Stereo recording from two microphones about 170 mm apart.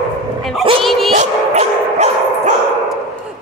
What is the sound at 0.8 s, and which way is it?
Dog, centre (ahead or behind).